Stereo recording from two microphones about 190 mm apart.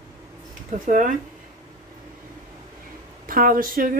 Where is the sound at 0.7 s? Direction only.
45° right (ahead or behind).